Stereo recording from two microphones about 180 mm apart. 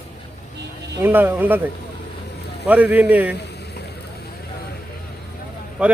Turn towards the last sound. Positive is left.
turn(degrees=-5)  # may be behind; listen again after turning